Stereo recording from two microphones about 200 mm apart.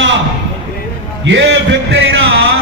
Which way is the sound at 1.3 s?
65° right (ahead or behind).